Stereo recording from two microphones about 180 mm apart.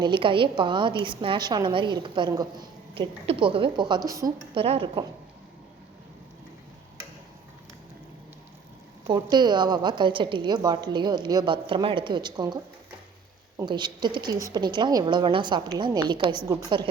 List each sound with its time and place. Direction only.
0.0 s a woman's voice: 25° right (ahead or behind)
4.5 s a woman's voice: 30° right (ahead or behind)
9.0 s a woman's voice: 25° right (ahead or behind)
13.7 s a woman's voice: 25° right (ahead or behind)